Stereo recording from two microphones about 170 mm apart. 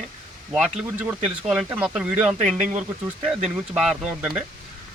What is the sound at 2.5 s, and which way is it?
Speech, 45° right (ahead or behind).